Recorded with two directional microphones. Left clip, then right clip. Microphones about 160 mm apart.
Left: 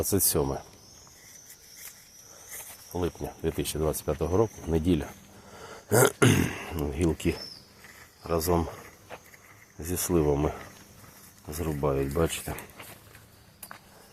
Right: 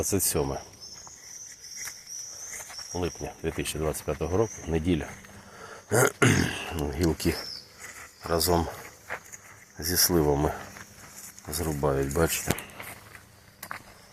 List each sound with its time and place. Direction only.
0.0 s speech: 20° left (ahead or behind)
2.9 s speech: 25° left (ahead or behind); by 12.3 s centre (ahead or behind)